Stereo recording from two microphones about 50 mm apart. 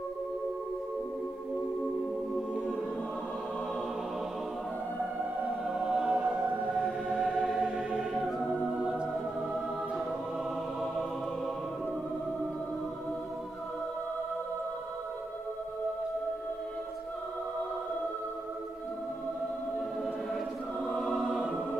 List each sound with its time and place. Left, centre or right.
5.7 s choir: centre
6.4 s music: centre
7.2 s choir: centre
8.1 s music: centre
8.8 s music: centre
10.8 s music: centre
20.9 s choir: centre